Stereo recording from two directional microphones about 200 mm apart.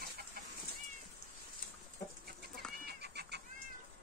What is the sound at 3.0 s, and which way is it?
Cat, 55° right (ahead or behind).